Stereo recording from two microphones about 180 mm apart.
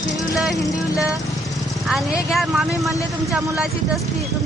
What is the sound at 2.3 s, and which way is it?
Speech, centre (ahead or behind).